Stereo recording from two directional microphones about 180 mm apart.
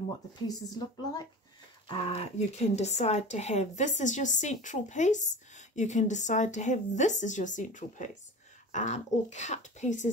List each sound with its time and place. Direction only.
0.5 s a woman's voice: 20° left (ahead or behind)
1.9 s speech: 35° left (ahead or behind)